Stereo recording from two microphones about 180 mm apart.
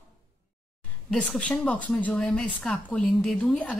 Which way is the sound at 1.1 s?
5° left (ahead or behind).